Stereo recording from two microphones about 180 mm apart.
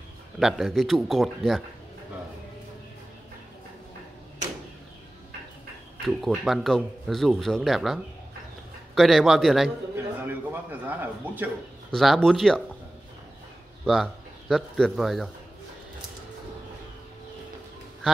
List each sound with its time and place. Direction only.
0.4 s speech: centre (ahead or behind)
6.0 s speech: centre (ahead or behind)
9.9 s a sound: 10° right (ahead or behind)
11.9 s speech: centre (ahead or behind)
13.8 s speech: centre (ahead or behind)